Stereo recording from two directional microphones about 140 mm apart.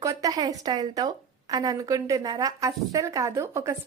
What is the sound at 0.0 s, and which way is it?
A woman's voice, 25° right (ahead or behind).